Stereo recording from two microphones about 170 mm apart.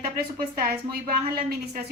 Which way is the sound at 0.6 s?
65° right (ahead or behind).